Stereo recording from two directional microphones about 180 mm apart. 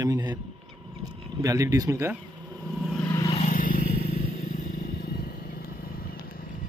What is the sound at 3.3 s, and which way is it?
Vehicle, 45° left (ahead or behind).